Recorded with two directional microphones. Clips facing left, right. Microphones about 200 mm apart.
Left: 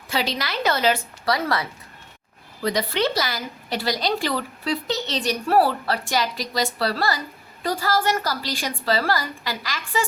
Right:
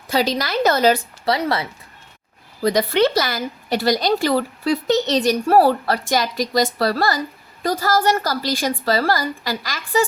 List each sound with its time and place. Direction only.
0.1 s a woman's voice: 40° right (ahead or behind)
1.2 s speech: 25° right (ahead or behind)
2.6 s speech: 40° right (ahead or behind)
2.9 s a woman's voice: 50° right (ahead or behind)